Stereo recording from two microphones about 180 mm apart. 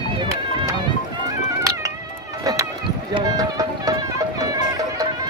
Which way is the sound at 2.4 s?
15° right (ahead or behind).